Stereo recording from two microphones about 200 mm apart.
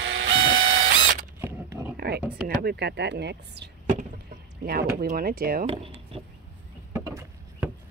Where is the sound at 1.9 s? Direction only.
50° right (ahead or behind).